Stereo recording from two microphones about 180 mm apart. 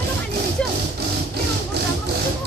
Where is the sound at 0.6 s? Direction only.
5° left (ahead or behind).